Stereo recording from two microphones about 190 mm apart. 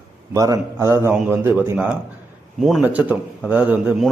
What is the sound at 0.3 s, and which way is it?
A man's voice, 20° right (ahead or behind).